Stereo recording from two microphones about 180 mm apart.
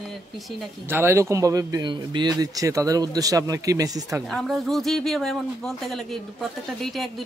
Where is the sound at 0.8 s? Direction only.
15° right (ahead or behind).